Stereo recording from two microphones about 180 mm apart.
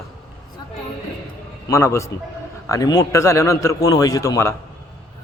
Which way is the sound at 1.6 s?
15° left (ahead or behind).